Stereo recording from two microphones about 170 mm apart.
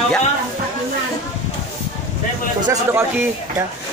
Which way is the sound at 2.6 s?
15° right (ahead or behind).